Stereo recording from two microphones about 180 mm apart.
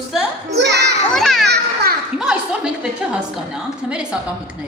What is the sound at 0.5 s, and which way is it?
Speech, 70° right (ahead or behind).